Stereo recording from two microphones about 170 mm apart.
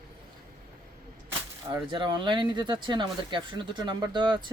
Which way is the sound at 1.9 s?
30° right (ahead or behind).